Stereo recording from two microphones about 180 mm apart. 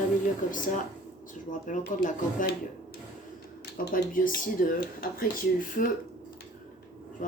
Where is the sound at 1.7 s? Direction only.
45° left (ahead or behind).